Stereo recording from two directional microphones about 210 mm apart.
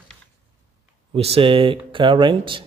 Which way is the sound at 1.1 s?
30° right (ahead or behind).